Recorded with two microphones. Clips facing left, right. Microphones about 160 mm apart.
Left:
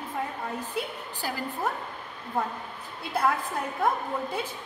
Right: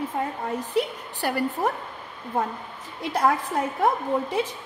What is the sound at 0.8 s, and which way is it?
Speech, 75° right (ahead or behind).